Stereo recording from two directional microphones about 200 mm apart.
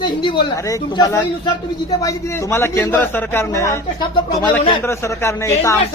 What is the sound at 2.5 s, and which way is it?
Speech, 10° left (ahead or behind).